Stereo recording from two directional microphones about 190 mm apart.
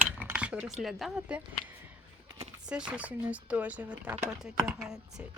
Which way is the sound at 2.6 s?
5° right (ahead or behind).